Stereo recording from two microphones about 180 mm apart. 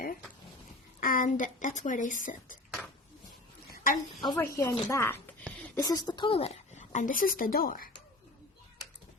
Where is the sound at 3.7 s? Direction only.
45° left (ahead or behind).